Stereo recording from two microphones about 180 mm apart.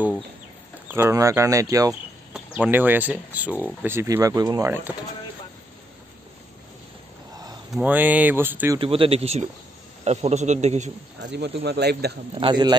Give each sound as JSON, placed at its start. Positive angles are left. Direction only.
{"t": 0.8, "sound": "speech", "side_deg": -15}
{"t": 2.3, "sound": "speech", "side_deg": -10}
{"t": 7.7, "sound": "speech", "side_deg": -10}
{"t": 8.7, "sound": "a man's voice", "side_deg": -30}
{"t": 11.2, "sound": "speech", "side_deg": -70}
{"t": 12.4, "sound": "a man's voice", "side_deg": -25}